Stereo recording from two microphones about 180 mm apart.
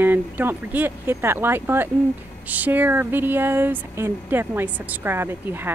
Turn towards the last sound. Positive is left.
turn(degrees=-10)  # may be behind; listen again after turning